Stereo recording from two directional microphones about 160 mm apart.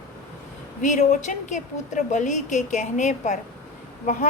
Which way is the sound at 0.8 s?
50° left (ahead or behind).